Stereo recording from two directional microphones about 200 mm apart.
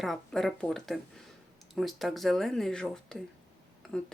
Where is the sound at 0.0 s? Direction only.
Centre (ahead or behind).